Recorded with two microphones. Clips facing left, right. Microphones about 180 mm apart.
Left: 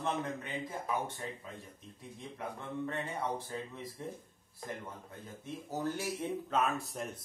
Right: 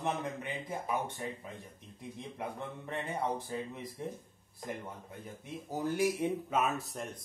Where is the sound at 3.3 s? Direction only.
15° right (ahead or behind).